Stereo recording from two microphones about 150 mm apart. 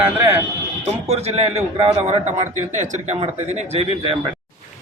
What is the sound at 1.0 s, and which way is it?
A man's voice, 45° right (ahead or behind).